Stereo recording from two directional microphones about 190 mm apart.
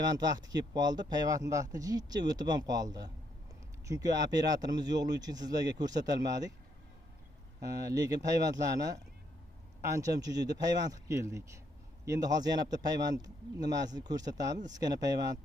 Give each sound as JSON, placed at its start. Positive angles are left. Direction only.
{"t": 0.0, "sound": "speech", "side_deg": -20}
{"t": 7.6, "sound": "speech", "side_deg": -20}